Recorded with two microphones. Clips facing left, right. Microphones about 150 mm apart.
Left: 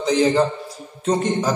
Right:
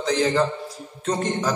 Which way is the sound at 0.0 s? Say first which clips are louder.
Left 4 dB; 15° left (ahead or behind).